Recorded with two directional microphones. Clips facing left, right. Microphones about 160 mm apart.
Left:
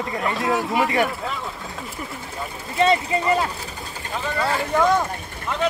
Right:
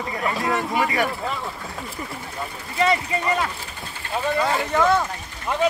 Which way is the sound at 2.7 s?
25° left (ahead or behind).